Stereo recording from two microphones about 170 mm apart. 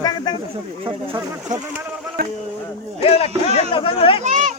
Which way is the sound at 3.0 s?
35° left (ahead or behind).